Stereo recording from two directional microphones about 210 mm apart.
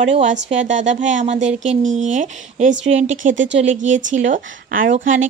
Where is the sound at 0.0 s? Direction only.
35° right (ahead or behind).